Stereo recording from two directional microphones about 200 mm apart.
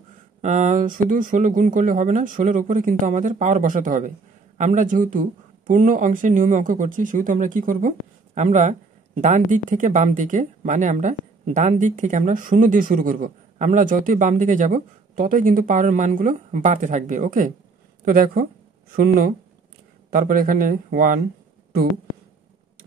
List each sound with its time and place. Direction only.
0.4 s speech: 40° right (ahead or behind)